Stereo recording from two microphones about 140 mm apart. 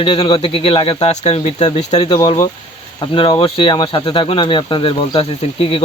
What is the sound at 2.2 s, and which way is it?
Speech, 25° left (ahead or behind).